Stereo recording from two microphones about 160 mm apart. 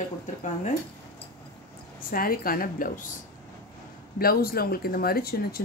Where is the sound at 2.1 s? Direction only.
65° left (ahead or behind).